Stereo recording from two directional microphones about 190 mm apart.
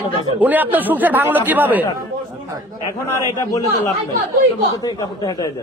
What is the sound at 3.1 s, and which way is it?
Speech, 10° left (ahead or behind).